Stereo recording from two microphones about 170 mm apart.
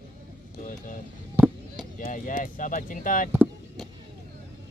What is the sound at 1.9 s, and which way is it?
Speech, 50° left (ahead or behind).